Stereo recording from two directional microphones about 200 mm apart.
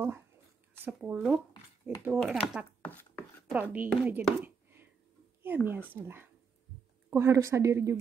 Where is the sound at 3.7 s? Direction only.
10° right (ahead or behind).